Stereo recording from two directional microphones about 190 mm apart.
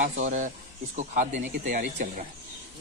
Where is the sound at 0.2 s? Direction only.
40° right (ahead or behind).